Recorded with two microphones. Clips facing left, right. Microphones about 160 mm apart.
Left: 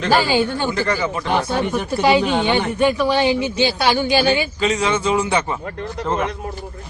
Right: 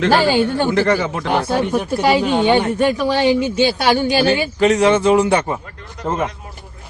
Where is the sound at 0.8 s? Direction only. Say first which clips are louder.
Right 4 dB; 70° right (ahead or behind).